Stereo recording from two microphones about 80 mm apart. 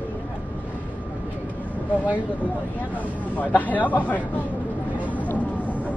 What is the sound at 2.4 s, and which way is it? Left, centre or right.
Speech, centre.